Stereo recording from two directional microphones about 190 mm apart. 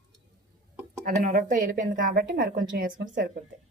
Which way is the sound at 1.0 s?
45° right (ahead or behind).